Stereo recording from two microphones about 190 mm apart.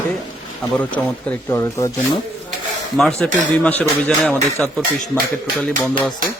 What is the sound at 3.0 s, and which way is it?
Speech, 5° left (ahead or behind).